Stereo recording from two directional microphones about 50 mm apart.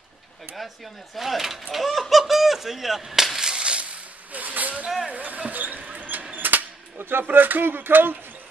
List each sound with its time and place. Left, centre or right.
1.1 s speech: centre
4.3 s speech: right
5.1 s basketball bounce: right
6.3 s speech: right